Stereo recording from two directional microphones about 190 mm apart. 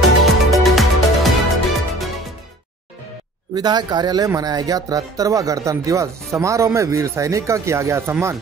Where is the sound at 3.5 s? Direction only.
20° right (ahead or behind).